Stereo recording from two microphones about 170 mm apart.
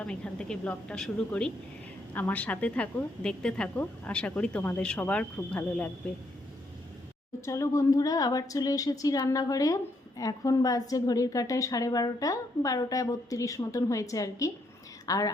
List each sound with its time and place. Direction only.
0.0 s a woman's voice: 5° left (ahead or behind)
7.4 s a woman's voice: 15° left (ahead or behind)